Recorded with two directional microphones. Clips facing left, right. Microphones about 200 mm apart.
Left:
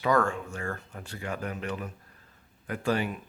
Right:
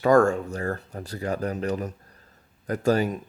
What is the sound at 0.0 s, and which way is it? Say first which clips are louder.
Speech: right 7 dB; 45° right (ahead or behind).